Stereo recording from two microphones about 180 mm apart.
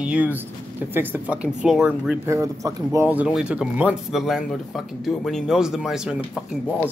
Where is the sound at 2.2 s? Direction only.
15° right (ahead or behind).